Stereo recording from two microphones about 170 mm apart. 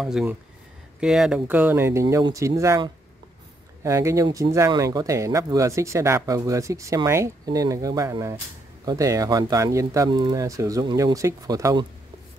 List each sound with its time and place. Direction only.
0.0 s speech: 5° right (ahead or behind)